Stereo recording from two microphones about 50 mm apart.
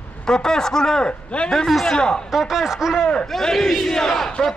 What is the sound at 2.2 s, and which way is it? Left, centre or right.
Speech, centre.